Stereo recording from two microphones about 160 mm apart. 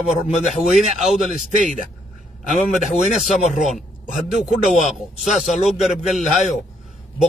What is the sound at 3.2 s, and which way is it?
Speech, centre (ahead or behind).